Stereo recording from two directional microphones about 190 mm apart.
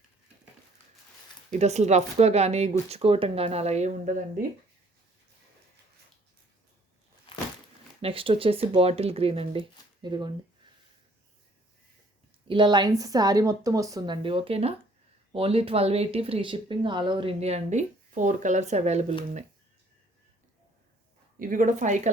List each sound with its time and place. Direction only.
1.5 s speech: 35° right (ahead or behind)
8.0 s speech: 30° right (ahead or behind)
12.5 s speech: 25° right (ahead or behind)
21.3 s speech: 45° right (ahead or behind)